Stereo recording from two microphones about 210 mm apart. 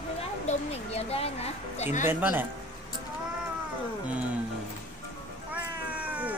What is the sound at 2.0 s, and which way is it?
Speech, 10° right (ahead or behind).